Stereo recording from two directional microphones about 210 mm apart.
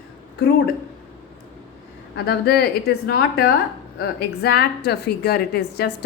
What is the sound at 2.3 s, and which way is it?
A woman's voice, 50° left (ahead or behind).